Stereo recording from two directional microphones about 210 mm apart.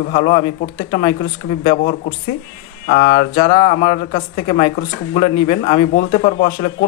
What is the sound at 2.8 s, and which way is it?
Speech, 35° left (ahead or behind).